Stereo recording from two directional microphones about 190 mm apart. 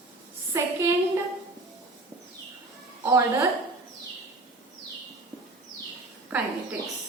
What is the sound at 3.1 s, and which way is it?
Speech, 15° right (ahead or behind).